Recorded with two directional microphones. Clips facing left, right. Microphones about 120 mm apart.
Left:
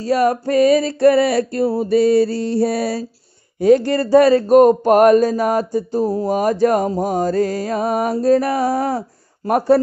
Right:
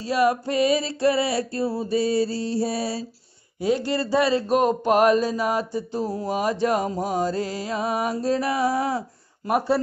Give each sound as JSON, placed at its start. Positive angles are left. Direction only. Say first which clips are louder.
{"t": 0.0, "sound": "music", "louder": "left 5 dB", "side_deg": 45}
{"t": 3.6, "sound": "speech", "louder": "left 10 dB", "side_deg": 50}